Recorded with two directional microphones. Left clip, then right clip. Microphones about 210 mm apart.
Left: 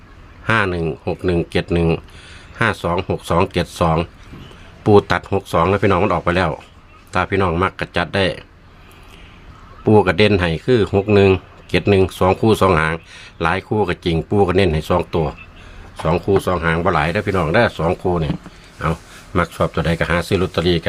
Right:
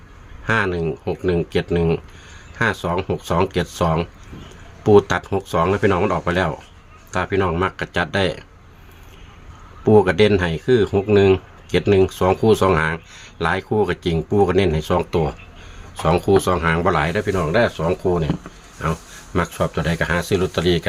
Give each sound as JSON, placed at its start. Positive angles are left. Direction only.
{"t": 0.4, "sound": "speech", "side_deg": 15}
{"t": 9.8, "sound": "speech", "side_deg": 10}